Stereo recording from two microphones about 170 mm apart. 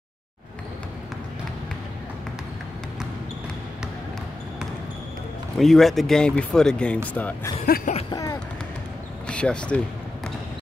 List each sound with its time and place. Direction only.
5.6 s speech: centre (ahead or behind)
7.6 s speech: 60° left (ahead or behind)
8.1 s speech: 20° left (ahead or behind)
9.3 s speech: 5° left (ahead or behind)